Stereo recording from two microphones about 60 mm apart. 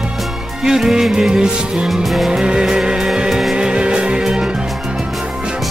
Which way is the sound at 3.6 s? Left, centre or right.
Centre.